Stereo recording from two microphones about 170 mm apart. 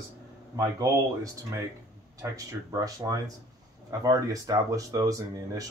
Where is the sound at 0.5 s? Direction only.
20° right (ahead or behind).